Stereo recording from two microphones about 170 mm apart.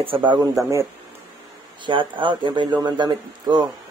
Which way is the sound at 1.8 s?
30° right (ahead or behind).